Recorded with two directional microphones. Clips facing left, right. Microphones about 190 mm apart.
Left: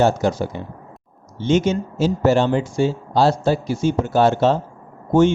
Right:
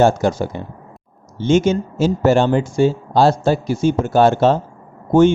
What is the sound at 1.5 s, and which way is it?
Speech, 50° right (ahead or behind).